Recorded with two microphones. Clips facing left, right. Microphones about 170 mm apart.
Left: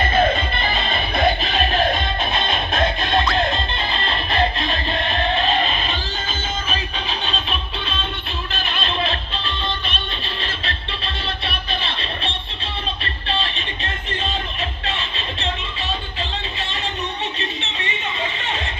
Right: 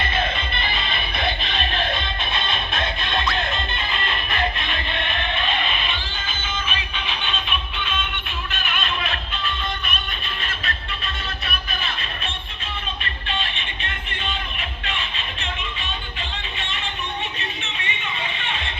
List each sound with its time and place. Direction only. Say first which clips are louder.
0.0 s music: left 7 dB; 45° left (ahead or behind)